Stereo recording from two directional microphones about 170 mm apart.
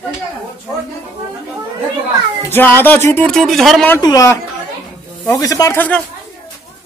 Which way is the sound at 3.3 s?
Centre (ahead or behind).